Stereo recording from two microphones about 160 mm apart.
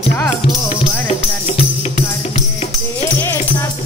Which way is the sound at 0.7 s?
40° left (ahead or behind).